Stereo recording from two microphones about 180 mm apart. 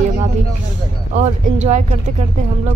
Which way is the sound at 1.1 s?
40° right (ahead or behind).